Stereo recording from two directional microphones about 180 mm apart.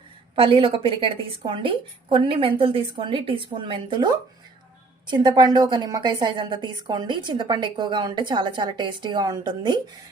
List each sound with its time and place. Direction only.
0.3 s a woman's voice: 30° right (ahead or behind)